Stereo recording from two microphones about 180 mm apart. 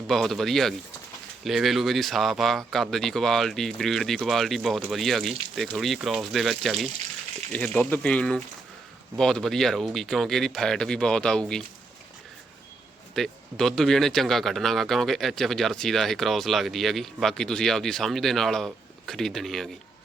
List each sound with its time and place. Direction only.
0.1 s speech: centre (ahead or behind)
13.1 s speech: centre (ahead or behind)